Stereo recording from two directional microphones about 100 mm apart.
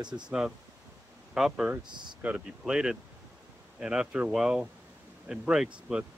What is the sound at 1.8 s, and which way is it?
Speech, 50° right (ahead or behind).